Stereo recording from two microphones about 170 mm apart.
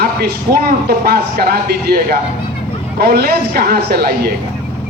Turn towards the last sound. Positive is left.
turn(degrees=-65)  # may be behind; listen again after turning